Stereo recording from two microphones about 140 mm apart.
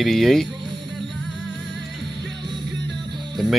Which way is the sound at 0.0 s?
Centre (ahead or behind).